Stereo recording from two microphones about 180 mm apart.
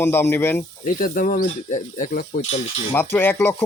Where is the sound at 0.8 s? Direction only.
50° left (ahead or behind).